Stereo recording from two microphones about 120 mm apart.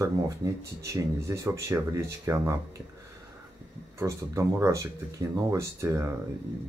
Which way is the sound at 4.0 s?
25° right (ahead or behind).